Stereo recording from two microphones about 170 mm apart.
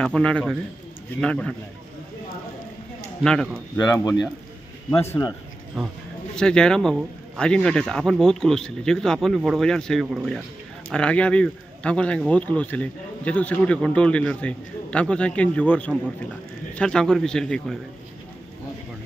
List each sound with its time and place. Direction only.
0.0 s speech: 5° left (ahead or behind)
3.7 s speech: 20° left (ahead or behind)
5.8 s speech: centre (ahead or behind)